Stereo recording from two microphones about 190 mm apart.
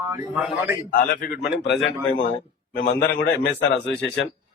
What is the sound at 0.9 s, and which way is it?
Speech, 50° left (ahead or behind).